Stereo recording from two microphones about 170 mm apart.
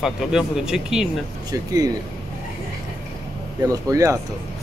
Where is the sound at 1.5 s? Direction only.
20° right (ahead or behind).